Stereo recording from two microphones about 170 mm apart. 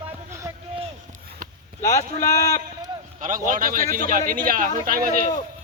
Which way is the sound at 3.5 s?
50° right (ahead or behind).